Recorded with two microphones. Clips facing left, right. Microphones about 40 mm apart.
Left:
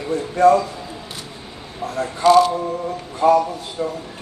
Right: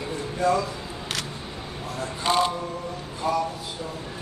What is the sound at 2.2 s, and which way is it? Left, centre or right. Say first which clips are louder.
Speech: left 10 dB; centre.